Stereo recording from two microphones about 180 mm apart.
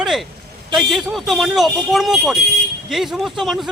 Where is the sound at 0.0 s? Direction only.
Centre (ahead or behind).